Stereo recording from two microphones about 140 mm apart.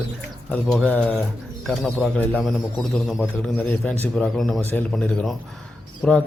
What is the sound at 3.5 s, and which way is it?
A man's voice, 10° left (ahead or behind).